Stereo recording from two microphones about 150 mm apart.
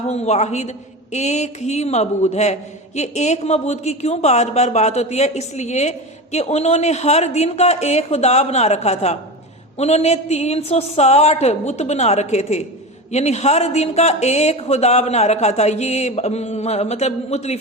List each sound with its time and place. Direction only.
0.1 s a woman's voice: 50° left (ahead or behind)